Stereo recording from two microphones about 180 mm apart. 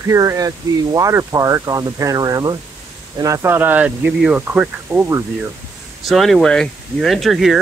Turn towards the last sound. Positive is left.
turn(degrees=0)  # may be behind; listen again after turning